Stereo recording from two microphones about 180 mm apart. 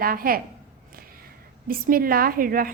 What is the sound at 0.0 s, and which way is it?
Speech, 55° right (ahead or behind).